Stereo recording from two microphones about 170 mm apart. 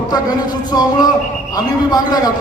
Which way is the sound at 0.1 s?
25° left (ahead or behind).